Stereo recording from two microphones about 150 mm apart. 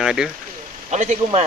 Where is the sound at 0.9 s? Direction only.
50° right (ahead or behind).